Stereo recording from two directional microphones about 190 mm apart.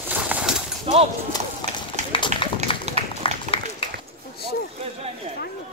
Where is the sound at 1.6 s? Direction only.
25° left (ahead or behind).